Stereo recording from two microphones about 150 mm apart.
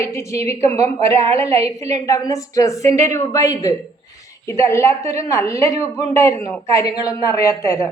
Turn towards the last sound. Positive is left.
turn(degrees=20)  # may be behind; listen again after turning